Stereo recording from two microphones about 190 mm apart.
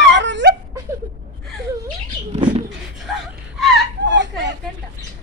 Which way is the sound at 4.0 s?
70° right (ahead or behind).